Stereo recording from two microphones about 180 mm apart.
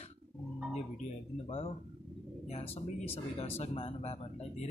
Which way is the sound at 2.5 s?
35° left (ahead or behind).